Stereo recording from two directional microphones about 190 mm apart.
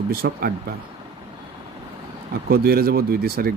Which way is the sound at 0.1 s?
55° right (ahead or behind).